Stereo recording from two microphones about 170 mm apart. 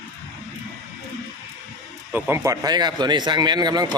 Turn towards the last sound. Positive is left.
turn(degrees=-25)  # may be behind; listen again after turning